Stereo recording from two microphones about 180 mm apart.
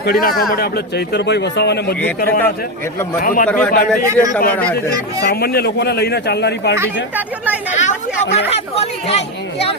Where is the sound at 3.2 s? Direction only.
50° left (ahead or behind).